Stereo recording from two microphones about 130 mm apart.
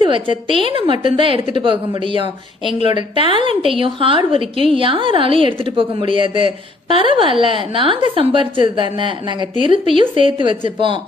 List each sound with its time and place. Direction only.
0.1 s a woman's voice: 40° right (ahead or behind)
3.3 s a woman's voice: 55° left (ahead or behind)
3.6 s a woman's voice: 40° right (ahead or behind)